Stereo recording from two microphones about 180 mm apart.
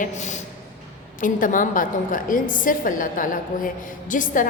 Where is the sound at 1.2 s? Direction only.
50° left (ahead or behind).